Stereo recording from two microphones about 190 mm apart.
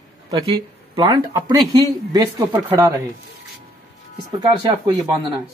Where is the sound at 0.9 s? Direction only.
20° right (ahead or behind).